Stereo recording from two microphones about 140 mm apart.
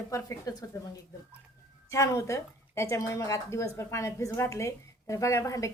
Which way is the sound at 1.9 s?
20° left (ahead or behind).